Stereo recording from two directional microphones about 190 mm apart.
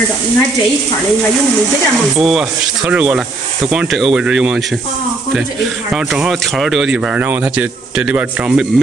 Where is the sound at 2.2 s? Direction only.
5° right (ahead or behind).